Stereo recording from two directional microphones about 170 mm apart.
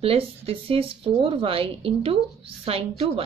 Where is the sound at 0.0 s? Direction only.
35° right (ahead or behind).